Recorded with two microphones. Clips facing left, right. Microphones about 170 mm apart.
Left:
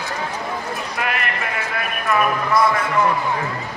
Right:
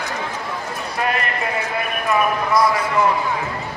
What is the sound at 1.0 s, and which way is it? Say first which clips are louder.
Clip-clop: right 4 dB; 35° right (ahead or behind).